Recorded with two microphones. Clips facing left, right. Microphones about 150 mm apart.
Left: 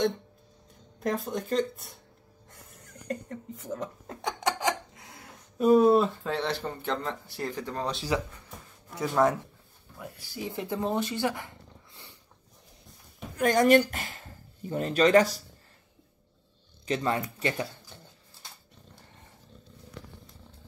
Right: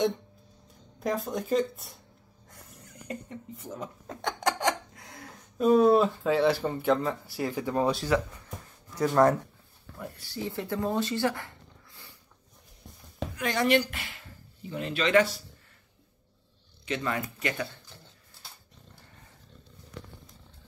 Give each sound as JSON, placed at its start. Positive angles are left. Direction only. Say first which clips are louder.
{"t": 0.9, "sound": "speech", "louder": "even", "side_deg": 0}
{"t": 9.0, "sound": "speech", "louder": "right 3 dB", "side_deg": 5}
{"t": 13.4, "sound": "speech", "louder": "left 5 dB", "side_deg": 45}
{"t": 16.8, "sound": "speech", "louder": "left 3 dB", "side_deg": 35}